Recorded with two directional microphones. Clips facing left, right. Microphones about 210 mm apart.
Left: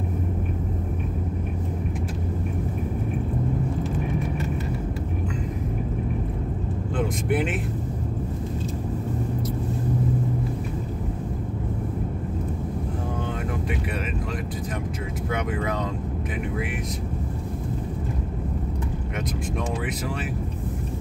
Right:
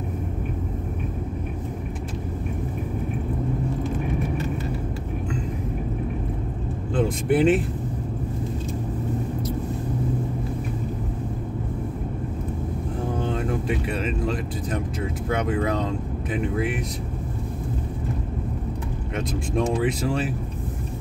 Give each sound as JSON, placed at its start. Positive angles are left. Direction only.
{"t": 7.0, "sound": "speech", "side_deg": -30}
{"t": 15.3, "sound": "speech", "side_deg": -30}
{"t": 19.5, "sound": "speech", "side_deg": -30}